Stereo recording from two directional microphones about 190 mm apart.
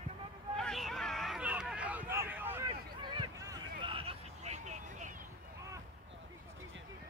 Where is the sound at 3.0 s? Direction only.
20° right (ahead or behind); by 5.1 s 40° right (ahead or behind).